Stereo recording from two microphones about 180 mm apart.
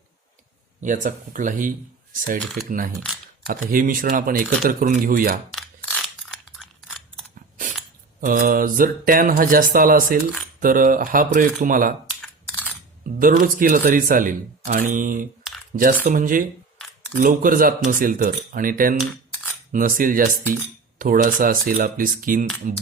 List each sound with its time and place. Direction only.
0.8 s speech: 45° right (ahead or behind)
5.5 s scissors: 5° left (ahead or behind)
8.2 s speech: 50° right (ahead or behind)
13.1 s speech: 50° right (ahead or behind)
18.9 s a sound: centre (ahead or behind)
19.7 s speech: 50° right (ahead or behind)